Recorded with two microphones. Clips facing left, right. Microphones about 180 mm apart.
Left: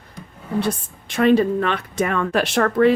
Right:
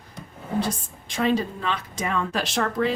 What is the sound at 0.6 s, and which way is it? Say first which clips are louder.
A woman's voice: left 4 dB; 60° left (ahead or behind).